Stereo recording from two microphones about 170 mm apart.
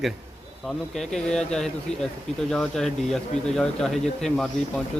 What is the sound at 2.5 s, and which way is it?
Speech, 5° left (ahead or behind).